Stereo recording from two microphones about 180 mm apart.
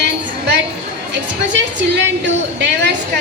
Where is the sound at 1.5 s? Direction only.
90° right.